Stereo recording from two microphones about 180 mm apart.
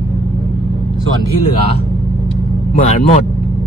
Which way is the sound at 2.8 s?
35° left (ahead or behind).